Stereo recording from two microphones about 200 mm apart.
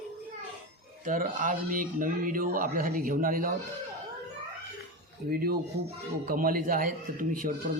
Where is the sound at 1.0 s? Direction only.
40° right (ahead or behind).